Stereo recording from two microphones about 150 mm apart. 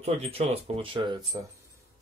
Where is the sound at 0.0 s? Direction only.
45° right (ahead or behind).